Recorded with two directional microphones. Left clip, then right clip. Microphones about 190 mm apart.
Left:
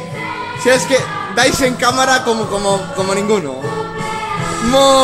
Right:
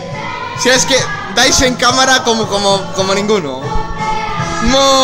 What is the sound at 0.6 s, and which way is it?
A man's voice, centre (ahead or behind).